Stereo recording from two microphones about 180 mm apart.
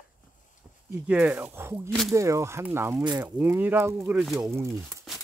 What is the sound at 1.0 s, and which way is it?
Speech, 10° right (ahead or behind).